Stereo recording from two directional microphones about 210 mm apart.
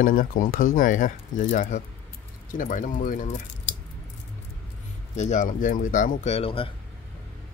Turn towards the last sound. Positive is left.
turn(degrees=25)  # may be behind; listen again after turning